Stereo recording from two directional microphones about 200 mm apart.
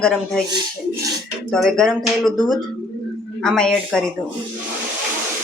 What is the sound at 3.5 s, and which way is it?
Speech, 5° left (ahead or behind).